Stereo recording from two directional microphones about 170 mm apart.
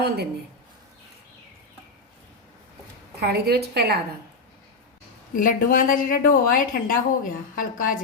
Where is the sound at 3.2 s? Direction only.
70° right (ahead or behind).